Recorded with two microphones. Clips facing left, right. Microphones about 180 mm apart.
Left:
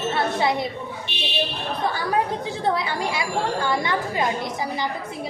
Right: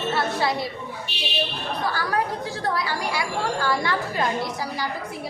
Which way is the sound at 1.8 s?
20° left (ahead or behind).